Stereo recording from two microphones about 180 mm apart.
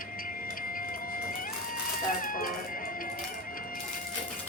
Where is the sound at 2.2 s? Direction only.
50° left (ahead or behind).